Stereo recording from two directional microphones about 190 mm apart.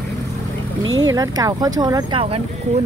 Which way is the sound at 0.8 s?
90° right.